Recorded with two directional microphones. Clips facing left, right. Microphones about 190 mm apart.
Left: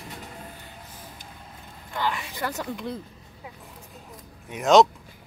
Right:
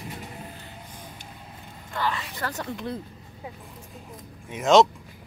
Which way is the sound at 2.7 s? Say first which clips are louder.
Even; centre (ahead or behind).